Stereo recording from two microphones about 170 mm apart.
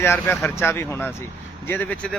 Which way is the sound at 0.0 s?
10° left (ahead or behind).